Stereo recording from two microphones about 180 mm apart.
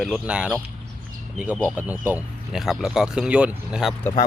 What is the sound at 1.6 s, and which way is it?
Speech, 10° right (ahead or behind).